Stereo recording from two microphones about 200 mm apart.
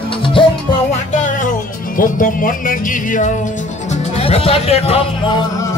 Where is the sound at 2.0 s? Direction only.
45° left (ahead or behind).